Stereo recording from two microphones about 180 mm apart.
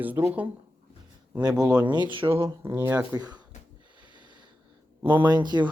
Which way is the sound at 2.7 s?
10° right (ahead or behind).